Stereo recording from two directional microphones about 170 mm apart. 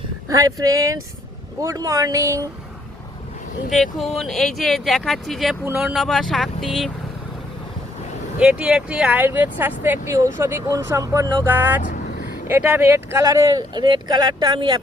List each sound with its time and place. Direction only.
0.3 s speech: 20° right (ahead or behind)
3.7 s speech: centre (ahead or behind)
8.4 s speech: 5° right (ahead or behind); by 11.4 s 20° right (ahead or behind)
11.4 s speech: 10° right (ahead or behind)